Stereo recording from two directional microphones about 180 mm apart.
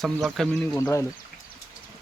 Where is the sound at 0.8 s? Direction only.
15° left (ahead or behind).